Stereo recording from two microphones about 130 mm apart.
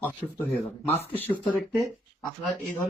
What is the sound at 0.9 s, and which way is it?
Speech, 50° right (ahead or behind).